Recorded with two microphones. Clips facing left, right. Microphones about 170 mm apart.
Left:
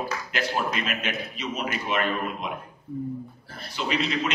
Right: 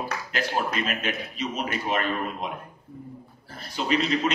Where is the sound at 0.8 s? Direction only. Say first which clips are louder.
Right 1 dB; 40° right (ahead or behind).